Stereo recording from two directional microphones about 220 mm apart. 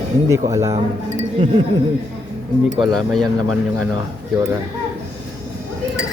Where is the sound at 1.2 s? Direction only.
25° right (ahead or behind).